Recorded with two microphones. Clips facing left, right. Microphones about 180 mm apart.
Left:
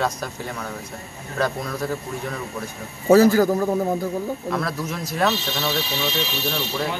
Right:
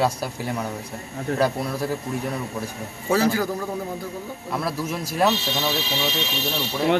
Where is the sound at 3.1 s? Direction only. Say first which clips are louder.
Left 7 dB; 40° left (ahead or behind).